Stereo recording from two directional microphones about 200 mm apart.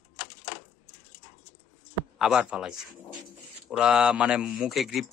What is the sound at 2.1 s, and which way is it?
A man's voice, 5° right (ahead or behind).